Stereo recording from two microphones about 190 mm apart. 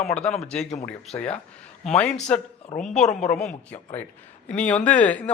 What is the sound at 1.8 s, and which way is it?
Speech, 5° left (ahead or behind).